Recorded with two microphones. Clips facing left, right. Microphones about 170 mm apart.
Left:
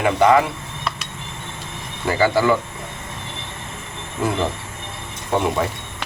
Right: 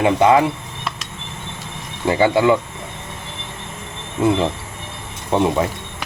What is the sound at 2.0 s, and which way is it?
Speech, 20° right (ahead or behind).